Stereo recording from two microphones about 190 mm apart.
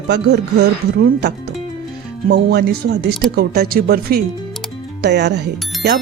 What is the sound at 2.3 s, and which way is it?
Speech, 60° right (ahead or behind).